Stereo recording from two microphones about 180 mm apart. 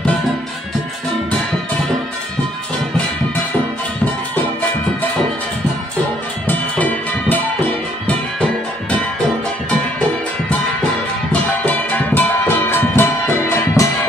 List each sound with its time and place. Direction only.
6.4 s music: 10° left (ahead or behind)
12.2 s music: 10° left (ahead or behind)